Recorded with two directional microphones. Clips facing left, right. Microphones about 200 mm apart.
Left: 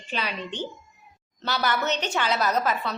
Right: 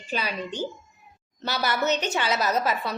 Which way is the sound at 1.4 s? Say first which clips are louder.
Right 1 dB; 10° right (ahead or behind).